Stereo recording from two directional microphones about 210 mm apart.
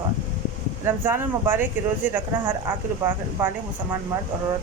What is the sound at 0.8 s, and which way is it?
Speech, 10° right (ahead or behind).